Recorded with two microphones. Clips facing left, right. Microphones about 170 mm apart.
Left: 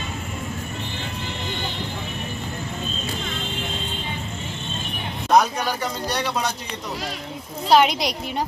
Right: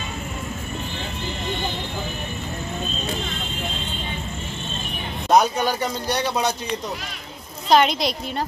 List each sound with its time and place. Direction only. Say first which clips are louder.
5.3 s speech: right 1 dB; 20° right (ahead or behind)
7.7 s a woman's voice: even; 10° left (ahead or behind)